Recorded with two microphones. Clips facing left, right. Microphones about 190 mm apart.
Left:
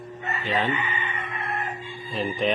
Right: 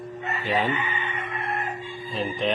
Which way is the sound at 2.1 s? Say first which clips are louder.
Left 1 dB; centre (ahead or behind).